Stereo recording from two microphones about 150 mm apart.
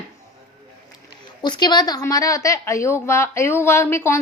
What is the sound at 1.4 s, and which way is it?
A woman's voice, 30° left (ahead or behind).